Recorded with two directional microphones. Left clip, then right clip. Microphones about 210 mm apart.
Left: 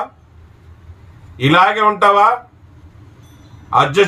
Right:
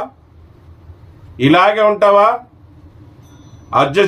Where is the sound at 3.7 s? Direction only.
Centre (ahead or behind).